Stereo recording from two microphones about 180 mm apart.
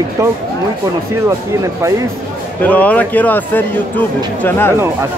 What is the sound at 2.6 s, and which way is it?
Speech, 10° left (ahead or behind).